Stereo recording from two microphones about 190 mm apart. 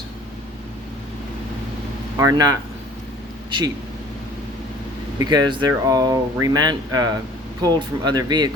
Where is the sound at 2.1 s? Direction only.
20° right (ahead or behind).